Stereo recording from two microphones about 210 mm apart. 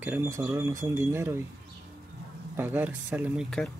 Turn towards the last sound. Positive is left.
turn(degrees=5)  # may be behind; listen again after turning